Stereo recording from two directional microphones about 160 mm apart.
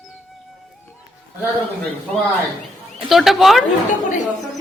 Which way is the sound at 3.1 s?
Centre (ahead or behind).